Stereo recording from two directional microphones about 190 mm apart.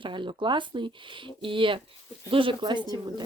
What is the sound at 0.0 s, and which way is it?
Speech, 25° right (ahead or behind).